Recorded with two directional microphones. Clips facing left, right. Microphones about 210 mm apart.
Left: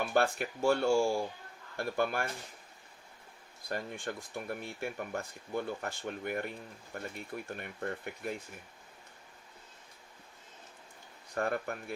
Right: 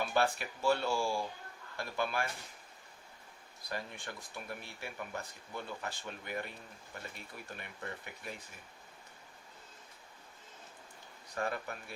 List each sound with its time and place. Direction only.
0.1 s speech: 50° left (ahead or behind)
3.7 s speech: 50° left (ahead or behind)
11.3 s speech: 50° left (ahead or behind)